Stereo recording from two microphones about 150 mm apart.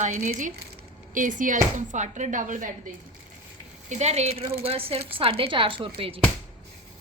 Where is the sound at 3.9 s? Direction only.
45° right (ahead or behind).